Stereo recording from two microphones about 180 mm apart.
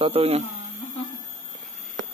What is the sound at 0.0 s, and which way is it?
Speech, 35° right (ahead or behind).